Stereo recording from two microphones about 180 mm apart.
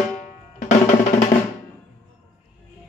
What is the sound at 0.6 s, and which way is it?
Music, 40° left (ahead or behind).